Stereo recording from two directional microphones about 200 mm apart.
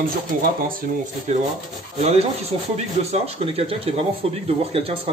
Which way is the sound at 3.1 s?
30° right (ahead or behind).